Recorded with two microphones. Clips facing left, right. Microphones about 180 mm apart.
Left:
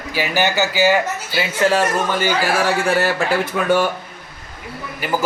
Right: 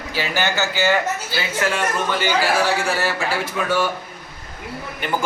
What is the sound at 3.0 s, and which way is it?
Speech, 60° left (ahead or behind).